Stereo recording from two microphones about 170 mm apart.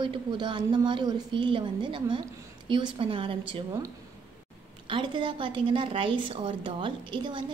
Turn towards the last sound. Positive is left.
turn(degrees=-30)  # may be behind; listen again after turning